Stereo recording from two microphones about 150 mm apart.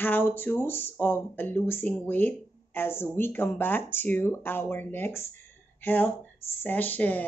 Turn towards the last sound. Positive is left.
turn(degrees=10)  # may be behind; listen again after turning